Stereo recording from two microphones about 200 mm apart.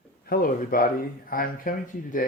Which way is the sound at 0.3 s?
45° left (ahead or behind).